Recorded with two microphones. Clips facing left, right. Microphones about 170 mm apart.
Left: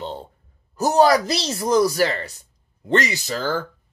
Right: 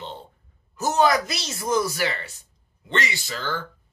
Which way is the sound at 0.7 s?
35° left (ahead or behind).